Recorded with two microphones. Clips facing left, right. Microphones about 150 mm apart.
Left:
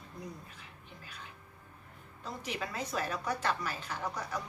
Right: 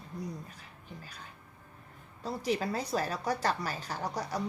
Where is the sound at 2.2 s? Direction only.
35° right (ahead or behind).